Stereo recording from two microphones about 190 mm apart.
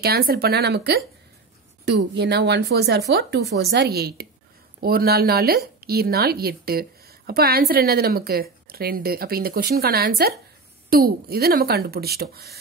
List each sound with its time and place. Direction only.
0.0 s a woman's voice: 55° right (ahead or behind)